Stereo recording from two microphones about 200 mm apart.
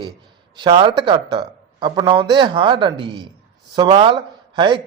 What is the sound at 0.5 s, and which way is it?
A man's voice, 25° right (ahead or behind).